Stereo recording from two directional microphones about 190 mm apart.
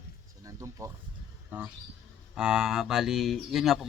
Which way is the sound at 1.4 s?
10° right (ahead or behind).